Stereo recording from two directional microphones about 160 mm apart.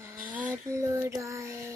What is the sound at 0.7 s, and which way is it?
Child singing, 20° right (ahead or behind).